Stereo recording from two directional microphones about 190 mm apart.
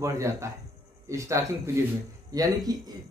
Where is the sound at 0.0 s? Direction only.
15° right (ahead or behind).